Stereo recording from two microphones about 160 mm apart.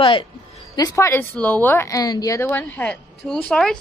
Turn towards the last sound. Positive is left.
turn(degrees=5)  # may be behind; listen again after turning